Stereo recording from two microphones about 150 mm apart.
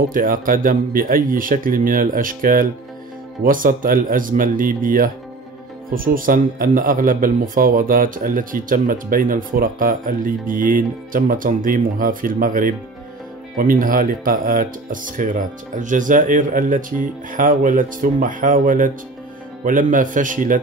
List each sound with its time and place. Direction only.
0.1 s speech: 65° right (ahead or behind)